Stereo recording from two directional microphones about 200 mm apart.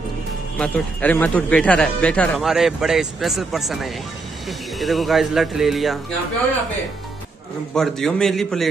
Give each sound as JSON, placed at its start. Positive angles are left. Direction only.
{"t": 0.6, "sound": "speech", "side_deg": 5}
{"t": 7.7, "sound": "speech", "side_deg": 0}